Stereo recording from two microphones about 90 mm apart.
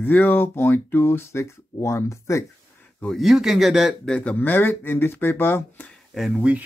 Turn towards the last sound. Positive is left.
turn(degrees=-10)  # may be behind; listen again after turning